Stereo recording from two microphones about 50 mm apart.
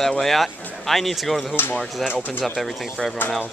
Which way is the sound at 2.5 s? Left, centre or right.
Centre.